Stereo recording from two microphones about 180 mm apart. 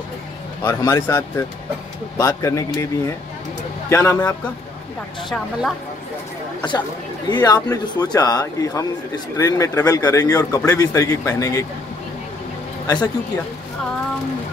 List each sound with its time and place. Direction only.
0.7 s speech: 15° left (ahead or behind)
3.9 s speech: 20° left (ahead or behind)
5.3 s speech: centre (ahead or behind)
7.2 s speech: 20° left (ahead or behind)
12.8 s speech: 20° left (ahead or behind)